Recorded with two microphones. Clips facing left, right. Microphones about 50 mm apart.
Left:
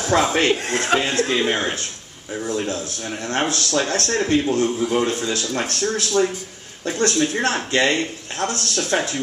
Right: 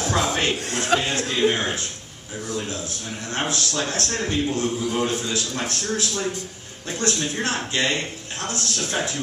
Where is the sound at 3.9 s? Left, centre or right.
Left.